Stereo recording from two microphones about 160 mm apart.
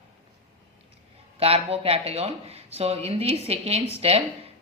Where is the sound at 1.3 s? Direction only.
40° right (ahead or behind).